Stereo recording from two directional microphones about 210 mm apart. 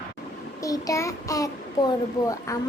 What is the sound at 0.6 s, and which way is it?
Speech, 15° left (ahead or behind).